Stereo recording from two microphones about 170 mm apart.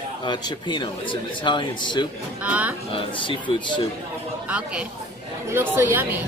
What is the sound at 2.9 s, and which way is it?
Speech, 30° left (ahead or behind).